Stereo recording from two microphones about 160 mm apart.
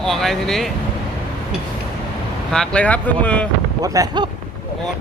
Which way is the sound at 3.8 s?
25° right (ahead or behind).